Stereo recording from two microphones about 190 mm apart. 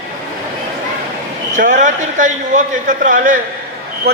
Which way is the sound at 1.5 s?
40° right (ahead or behind).